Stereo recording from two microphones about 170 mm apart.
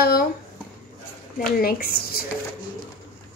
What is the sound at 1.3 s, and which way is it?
Speech, 60° left (ahead or behind).